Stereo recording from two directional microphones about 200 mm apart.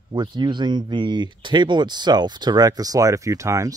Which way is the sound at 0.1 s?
20° right (ahead or behind).